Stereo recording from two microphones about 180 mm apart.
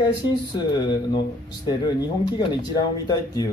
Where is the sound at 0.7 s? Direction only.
25° left (ahead or behind).